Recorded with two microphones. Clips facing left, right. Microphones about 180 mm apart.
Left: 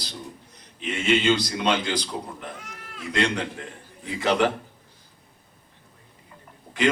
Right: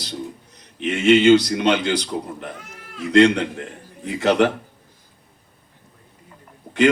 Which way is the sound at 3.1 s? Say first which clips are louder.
Right 11 dB; 65° right (ahead or behind).